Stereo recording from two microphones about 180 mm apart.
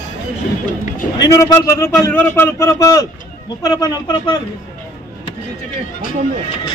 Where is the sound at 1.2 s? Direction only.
15° left (ahead or behind).